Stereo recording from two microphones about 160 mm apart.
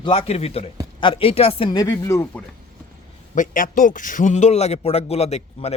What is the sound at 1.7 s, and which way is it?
Speech, 20° left (ahead or behind).